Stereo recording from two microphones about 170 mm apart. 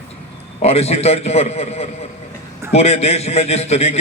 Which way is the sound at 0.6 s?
40° left (ahead or behind).